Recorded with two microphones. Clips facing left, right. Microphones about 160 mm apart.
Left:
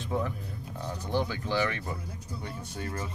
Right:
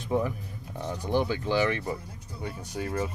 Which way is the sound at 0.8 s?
20° right (ahead or behind).